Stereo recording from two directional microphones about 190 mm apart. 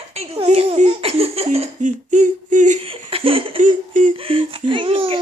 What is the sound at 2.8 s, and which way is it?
Laughter, 30° right (ahead or behind).